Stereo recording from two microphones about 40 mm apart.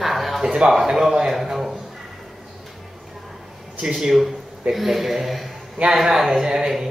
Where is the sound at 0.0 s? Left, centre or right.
Centre.